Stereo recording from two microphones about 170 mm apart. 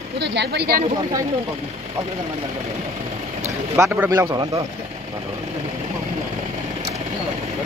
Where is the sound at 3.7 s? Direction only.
15° right (ahead or behind).